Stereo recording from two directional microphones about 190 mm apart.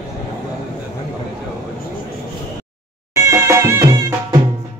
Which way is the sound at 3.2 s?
15° right (ahead or behind).